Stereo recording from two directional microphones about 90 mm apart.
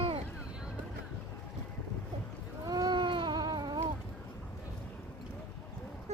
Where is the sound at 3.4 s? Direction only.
50° right (ahead or behind).